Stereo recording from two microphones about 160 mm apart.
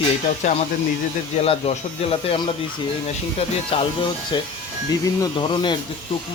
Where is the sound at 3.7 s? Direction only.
35° left (ahead or behind).